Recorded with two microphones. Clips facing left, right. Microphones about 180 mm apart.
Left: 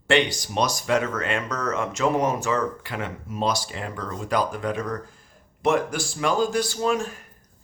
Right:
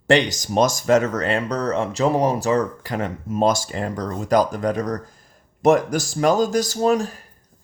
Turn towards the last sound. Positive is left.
turn(degrees=-35)  # may be behind; listen again after turning